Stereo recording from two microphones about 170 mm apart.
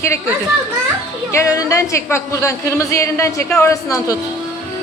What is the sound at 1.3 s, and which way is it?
A man's voice, 20° left (ahead or behind).